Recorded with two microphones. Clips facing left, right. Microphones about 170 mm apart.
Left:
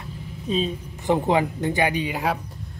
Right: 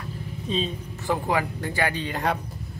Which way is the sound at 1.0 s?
20° left (ahead or behind).